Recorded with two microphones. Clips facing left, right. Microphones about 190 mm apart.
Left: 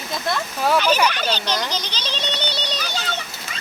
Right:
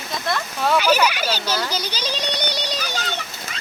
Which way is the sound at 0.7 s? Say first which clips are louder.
Right 1 dB; 10° right (ahead or behind).